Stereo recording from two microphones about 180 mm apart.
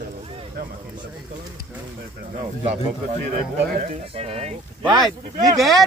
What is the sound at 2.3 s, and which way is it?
Speech, 40° right (ahead or behind).